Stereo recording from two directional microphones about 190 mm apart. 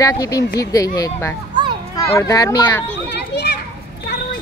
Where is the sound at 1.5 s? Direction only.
25° right (ahead or behind).